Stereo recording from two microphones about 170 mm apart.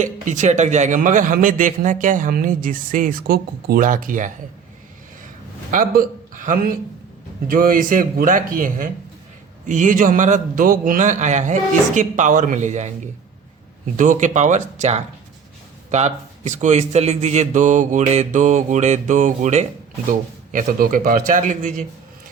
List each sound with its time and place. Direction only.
0.0 s a man's voice: 45° right (ahead or behind)
5.7 s a man's voice: 55° right (ahead or behind)
13.9 s a man's voice: 50° right (ahead or behind)